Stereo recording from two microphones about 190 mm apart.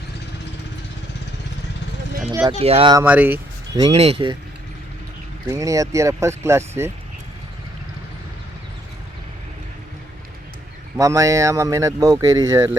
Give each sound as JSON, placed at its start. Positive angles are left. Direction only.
{"t": 2.5, "sound": "speech", "side_deg": -30}
{"t": 2.9, "sound": "speech", "side_deg": -10}
{"t": 3.8, "sound": "speech", "side_deg": -25}
{"t": 5.5, "sound": "speech", "side_deg": -15}
{"t": 10.9, "sound": "speech", "side_deg": -15}